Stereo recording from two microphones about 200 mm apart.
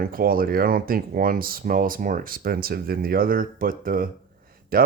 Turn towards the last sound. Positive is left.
turn(degrees=-45)  # may be behind; listen again after turning